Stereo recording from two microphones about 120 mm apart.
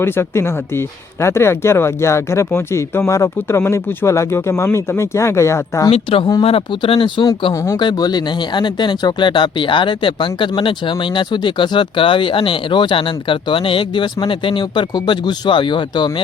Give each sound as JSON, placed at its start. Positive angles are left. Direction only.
{"t": 0.0, "sound": "speech", "side_deg": 20}
{"t": 5.9, "sound": "speech", "side_deg": 50}
{"t": 7.5, "sound": "speech", "side_deg": 25}
{"t": 7.8, "sound": "speech", "side_deg": 35}